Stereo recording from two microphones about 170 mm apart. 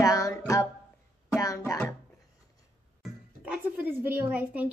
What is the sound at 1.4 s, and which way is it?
Music, 20° left (ahead or behind).